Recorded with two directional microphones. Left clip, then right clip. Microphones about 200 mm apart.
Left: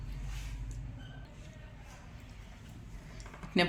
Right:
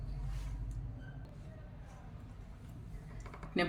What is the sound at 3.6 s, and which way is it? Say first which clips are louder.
Speech: left 5 dB; 25° left (ahead or behind).